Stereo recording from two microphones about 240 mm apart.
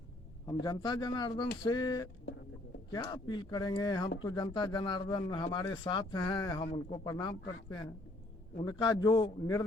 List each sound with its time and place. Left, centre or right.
0.6 s speech: centre
8.6 s speech: centre